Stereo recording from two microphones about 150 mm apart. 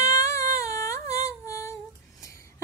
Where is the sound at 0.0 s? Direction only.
20° left (ahead or behind).